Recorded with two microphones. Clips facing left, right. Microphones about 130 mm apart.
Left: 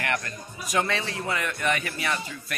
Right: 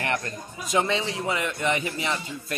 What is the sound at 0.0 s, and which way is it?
A man's voice, 30° right (ahead or behind).